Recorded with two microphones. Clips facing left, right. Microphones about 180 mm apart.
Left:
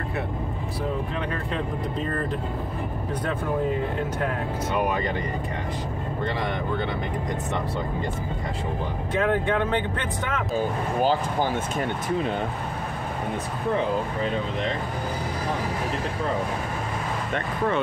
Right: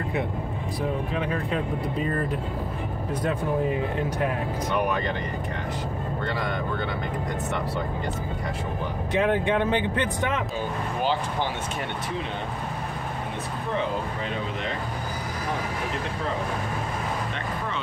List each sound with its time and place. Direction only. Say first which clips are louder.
1.1 s speech: right 2 dB; 5° right (ahead or behind)
9.2 s speech: even; 20° right (ahead or behind)
11.0 s speech: left 4 dB; 40° left (ahead or behind)